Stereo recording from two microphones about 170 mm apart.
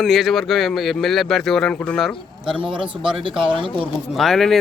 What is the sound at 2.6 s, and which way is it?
A man's voice, 30° right (ahead or behind).